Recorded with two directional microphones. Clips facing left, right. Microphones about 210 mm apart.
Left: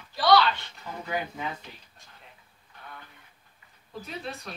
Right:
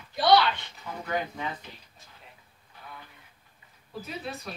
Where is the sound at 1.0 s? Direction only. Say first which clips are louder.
Right 1 dB; 5° left (ahead or behind).